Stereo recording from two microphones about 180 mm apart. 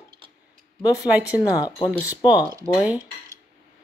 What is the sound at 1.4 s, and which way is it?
Speech, 20° left (ahead or behind).